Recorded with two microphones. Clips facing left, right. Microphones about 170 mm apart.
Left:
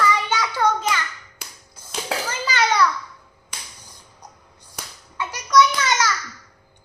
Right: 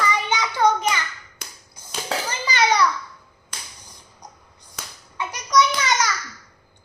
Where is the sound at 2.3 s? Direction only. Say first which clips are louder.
Right 2 dB; 15° right (ahead or behind).